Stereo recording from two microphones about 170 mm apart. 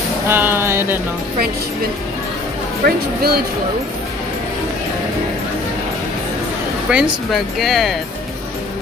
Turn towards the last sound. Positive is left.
turn(degrees=0)  # may be behind; listen again after turning